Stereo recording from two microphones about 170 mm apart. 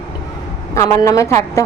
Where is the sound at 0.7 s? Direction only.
15° left (ahead or behind).